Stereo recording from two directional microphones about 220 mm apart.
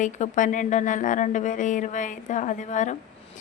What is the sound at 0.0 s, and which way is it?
A woman's voice, 35° left (ahead or behind).